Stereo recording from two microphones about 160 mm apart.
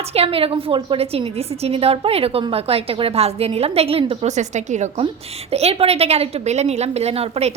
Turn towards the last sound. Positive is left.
turn(degrees=-40)  # may be behind; listen again after turning